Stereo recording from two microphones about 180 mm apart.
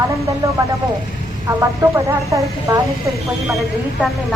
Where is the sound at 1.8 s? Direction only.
15° right (ahead or behind).